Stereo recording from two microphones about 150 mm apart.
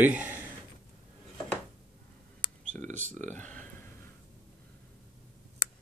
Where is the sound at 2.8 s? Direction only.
55° right (ahead or behind).